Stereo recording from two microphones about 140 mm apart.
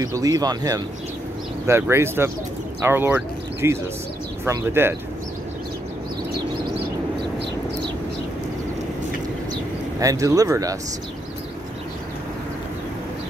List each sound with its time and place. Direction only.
0.0 s speech: 25° right (ahead or behind)
9.9 s speech: 25° right (ahead or behind)